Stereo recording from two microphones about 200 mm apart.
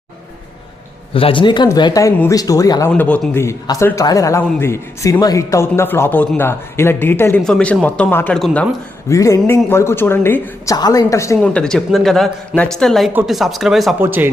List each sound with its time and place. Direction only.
1.1 s a man's voice: 25° left (ahead or behind); by 8.6 s 5° left (ahead or behind)
9.0 s a man's voice: 15° left (ahead or behind)
11.3 s a woman's voice: 5° left (ahead or behind)